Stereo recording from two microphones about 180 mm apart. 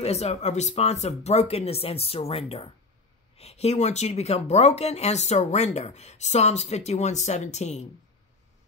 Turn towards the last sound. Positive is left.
turn(degrees=40)  # may be behind; listen again after turning